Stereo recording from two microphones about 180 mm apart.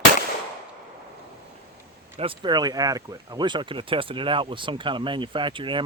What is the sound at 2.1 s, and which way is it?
Speech, 30° right (ahead or behind).